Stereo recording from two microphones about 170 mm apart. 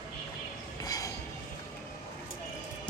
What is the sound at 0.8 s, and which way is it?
Train, 20° left (ahead or behind).